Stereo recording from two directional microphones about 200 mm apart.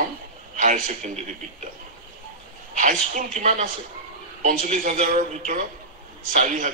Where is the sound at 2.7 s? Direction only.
40° right (ahead or behind).